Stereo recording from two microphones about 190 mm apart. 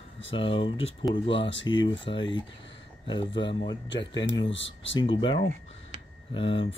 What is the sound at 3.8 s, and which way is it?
Speech, 70° left (ahead or behind).